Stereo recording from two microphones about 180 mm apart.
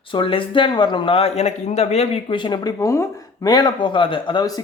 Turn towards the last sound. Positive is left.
turn(degrees=25)  # may be behind; listen again after turning